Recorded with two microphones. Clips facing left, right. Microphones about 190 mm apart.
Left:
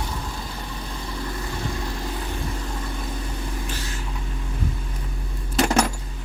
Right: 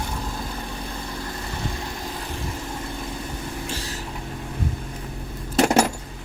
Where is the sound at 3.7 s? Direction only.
35° right (ahead or behind).